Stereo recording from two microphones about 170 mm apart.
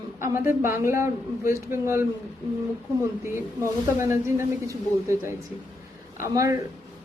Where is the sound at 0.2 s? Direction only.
15° right (ahead or behind).